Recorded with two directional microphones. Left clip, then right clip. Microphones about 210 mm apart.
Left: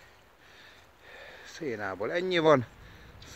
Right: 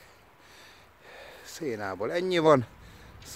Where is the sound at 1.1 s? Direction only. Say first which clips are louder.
Right 1 dB; 20° right (ahead or behind).